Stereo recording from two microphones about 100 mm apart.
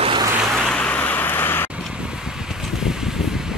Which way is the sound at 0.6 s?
10° left (ahead or behind).